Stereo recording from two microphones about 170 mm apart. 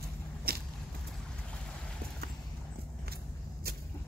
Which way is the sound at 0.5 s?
65° right (ahead or behind).